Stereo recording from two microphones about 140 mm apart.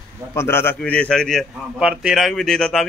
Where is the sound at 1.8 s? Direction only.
5° right (ahead or behind).